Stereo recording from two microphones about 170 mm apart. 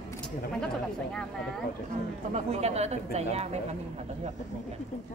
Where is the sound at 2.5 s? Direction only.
40° right (ahead or behind).